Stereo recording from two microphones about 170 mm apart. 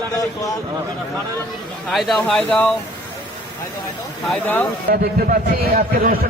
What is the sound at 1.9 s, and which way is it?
Speech, centre (ahead or behind).